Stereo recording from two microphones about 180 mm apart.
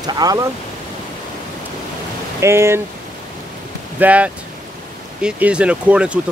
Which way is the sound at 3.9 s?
10° right (ahead or behind).